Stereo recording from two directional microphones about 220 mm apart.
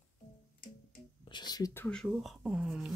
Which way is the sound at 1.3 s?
20° left (ahead or behind).